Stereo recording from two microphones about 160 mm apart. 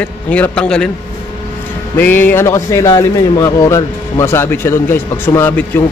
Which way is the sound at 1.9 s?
10° left (ahead or behind).